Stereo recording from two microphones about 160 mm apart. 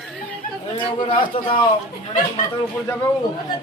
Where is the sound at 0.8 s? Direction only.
30° left (ahead or behind).